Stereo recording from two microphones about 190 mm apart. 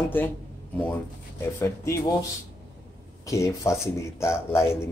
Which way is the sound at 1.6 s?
15° left (ahead or behind).